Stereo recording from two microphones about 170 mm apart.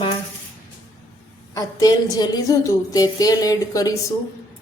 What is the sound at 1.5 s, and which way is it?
A woman's voice, 20° left (ahead or behind).